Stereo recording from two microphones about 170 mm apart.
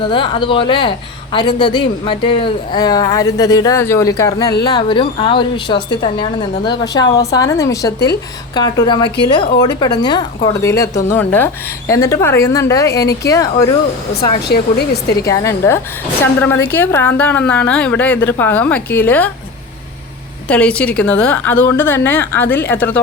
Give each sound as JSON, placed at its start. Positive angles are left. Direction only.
{"t": 0.0, "sound": "a woman's voice", "side_deg": 30}
{"t": 14.4, "sound": "speech", "side_deg": 70}
{"t": 15.3, "sound": "a woman's voice", "side_deg": 15}
{"t": 20.5, "sound": "a woman's voice", "side_deg": 10}